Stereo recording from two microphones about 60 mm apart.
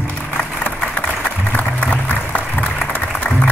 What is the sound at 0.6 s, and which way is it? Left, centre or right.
Music, left.